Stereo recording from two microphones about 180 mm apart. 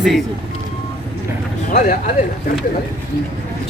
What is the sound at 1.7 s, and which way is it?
Speech, 45° left (ahead or behind).